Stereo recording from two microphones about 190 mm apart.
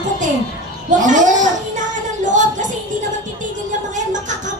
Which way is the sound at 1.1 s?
40° right (ahead or behind).